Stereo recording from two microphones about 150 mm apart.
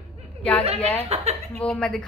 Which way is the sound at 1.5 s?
5° left (ahead or behind).